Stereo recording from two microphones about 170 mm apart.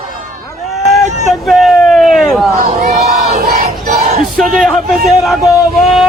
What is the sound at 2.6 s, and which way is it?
Crowd, 50° right (ahead or behind).